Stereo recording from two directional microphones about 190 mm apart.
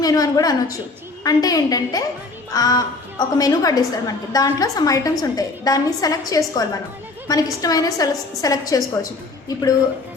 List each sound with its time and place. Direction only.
0.0 s a woman's voice: 20° left (ahead or behind)